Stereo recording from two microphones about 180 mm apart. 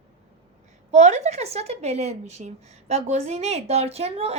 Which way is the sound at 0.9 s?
40° right (ahead or behind).